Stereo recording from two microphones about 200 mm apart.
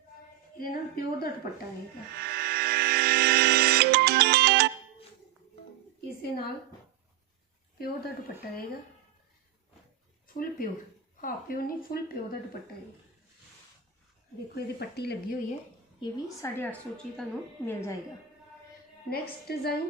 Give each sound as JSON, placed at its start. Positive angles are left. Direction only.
{"t": 0.6, "sound": "speech", "side_deg": 45}
{"t": 2.2, "sound": "train", "side_deg": -55}
{"t": 10.2, "sound": "speech", "side_deg": 45}
{"t": 14.5, "sound": "speech", "side_deg": 55}
{"t": 16.0, "sound": "a woman's voice", "side_deg": 15}
{"t": 17.7, "sound": "a woman's voice", "side_deg": 10}
{"t": 19.1, "sound": "speech", "side_deg": 50}